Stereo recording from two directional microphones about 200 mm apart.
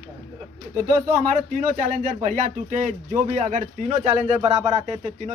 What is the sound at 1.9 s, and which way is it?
Speech, 40° right (ahead or behind).